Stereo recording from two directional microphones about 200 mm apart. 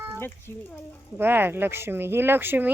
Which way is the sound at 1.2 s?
10° right (ahead or behind).